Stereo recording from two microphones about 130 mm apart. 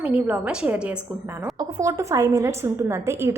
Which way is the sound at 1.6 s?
25° right (ahead or behind).